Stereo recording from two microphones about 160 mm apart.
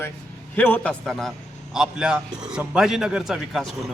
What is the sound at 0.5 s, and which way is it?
A man's voice, 10° left (ahead or behind).